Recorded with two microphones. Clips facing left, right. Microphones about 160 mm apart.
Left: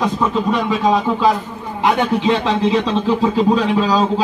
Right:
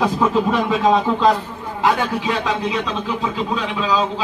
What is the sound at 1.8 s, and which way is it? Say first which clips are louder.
Speech: left 3 dB; 20° left (ahead or behind).